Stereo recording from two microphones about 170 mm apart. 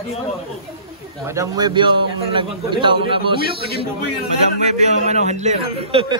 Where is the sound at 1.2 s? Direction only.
20° right (ahead or behind).